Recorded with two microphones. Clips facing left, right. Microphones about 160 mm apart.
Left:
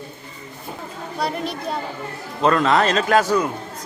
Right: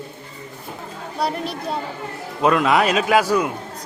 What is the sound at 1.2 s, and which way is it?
A man's voice, 5° right (ahead or behind).